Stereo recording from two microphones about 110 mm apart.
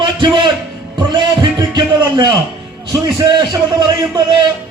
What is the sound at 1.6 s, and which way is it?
A man's voice, 40° right (ahead or behind).